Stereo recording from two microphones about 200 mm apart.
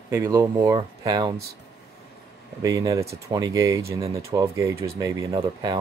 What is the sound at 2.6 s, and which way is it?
Speech, 15° right (ahead or behind).